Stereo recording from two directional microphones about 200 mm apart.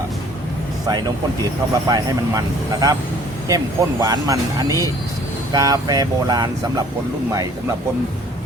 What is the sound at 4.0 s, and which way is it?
Speech, 15° right (ahead or behind).